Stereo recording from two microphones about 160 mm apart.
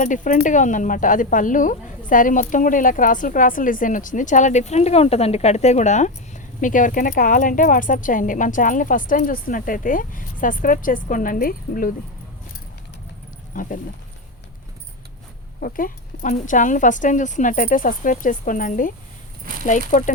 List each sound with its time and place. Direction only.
0.0 s speech: 55° left (ahead or behind)
13.5 s speech: 55° left (ahead or behind)
15.6 s speech: 60° left (ahead or behind)